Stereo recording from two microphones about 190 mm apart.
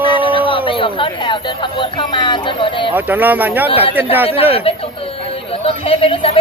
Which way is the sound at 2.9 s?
10° right (ahead or behind).